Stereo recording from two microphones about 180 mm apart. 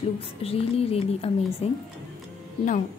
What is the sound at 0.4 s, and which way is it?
A woman's voice, 35° left (ahead or behind).